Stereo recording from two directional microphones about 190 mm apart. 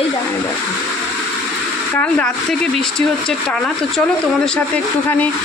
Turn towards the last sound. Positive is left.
turn(degrees=5)  # may be behind; listen again after turning